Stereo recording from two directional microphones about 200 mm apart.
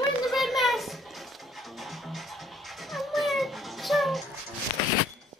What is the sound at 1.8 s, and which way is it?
Music, centre (ahead or behind).